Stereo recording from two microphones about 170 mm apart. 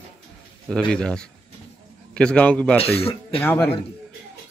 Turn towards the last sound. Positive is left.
turn(degrees=10)  # may be behind; listen again after turning